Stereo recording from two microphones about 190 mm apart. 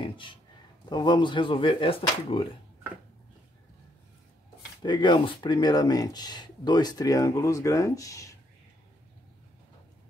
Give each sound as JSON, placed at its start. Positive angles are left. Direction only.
{"t": 0.0, "sound": "a sound", "side_deg": 25}
{"t": 0.8, "sound": "speech", "side_deg": 25}
{"t": 4.8, "sound": "speech", "side_deg": 25}